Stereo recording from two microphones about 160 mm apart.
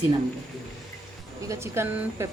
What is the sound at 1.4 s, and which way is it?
Speech, 20° right (ahead or behind).